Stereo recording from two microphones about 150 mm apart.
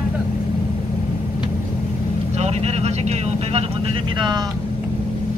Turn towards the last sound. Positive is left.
turn(degrees=-30)  # may be behind; listen again after turning